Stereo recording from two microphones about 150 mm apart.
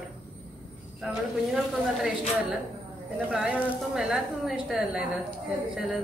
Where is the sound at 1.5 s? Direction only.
5° right (ahead or behind).